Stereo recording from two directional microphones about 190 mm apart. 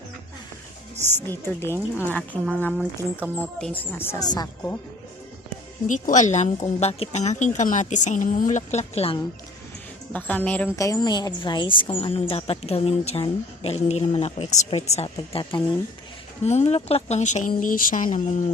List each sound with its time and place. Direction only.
1.3 s speech: 10° left (ahead or behind)
3.2 s speech: 10° right (ahead or behind)
3.6 s speech: 10° left (ahead or behind)
5.9 s a woman's voice: 40° left (ahead or behind)
10.1 s speech: 10° left (ahead or behind)
10.8 s a woman's voice: 20° left (ahead or behind); by 18.4 s 40° left (ahead or behind)